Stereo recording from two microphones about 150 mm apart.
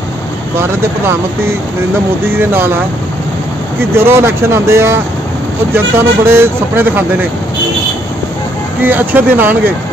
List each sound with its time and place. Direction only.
0.6 s speech: 15° right (ahead or behind)
3.9 s speech: 15° right (ahead or behind)
8.8 s speech: 10° right (ahead or behind)